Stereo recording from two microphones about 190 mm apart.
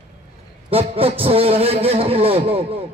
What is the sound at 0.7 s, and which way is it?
Speech, 30° right (ahead or behind).